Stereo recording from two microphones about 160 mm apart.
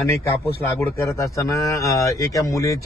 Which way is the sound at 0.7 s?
15° left (ahead or behind).